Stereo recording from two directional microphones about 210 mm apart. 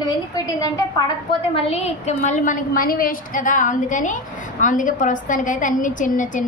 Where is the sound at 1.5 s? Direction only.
30° left (ahead or behind).